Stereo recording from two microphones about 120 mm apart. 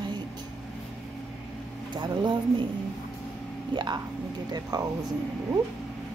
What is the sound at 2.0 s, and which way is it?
Speech, 40° right (ahead or behind).